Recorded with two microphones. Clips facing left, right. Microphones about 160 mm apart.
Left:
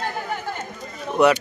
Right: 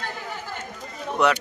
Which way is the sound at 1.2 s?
5° left (ahead or behind).